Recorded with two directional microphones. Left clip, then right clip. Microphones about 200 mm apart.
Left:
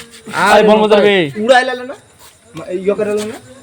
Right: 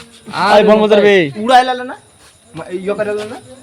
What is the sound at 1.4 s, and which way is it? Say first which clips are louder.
Speech: left 2 dB; 40° right (ahead or behind).